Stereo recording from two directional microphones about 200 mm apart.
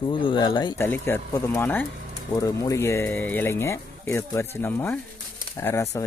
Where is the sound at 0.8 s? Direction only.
10° left (ahead or behind).